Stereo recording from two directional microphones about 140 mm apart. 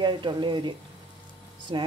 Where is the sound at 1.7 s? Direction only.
40° right (ahead or behind).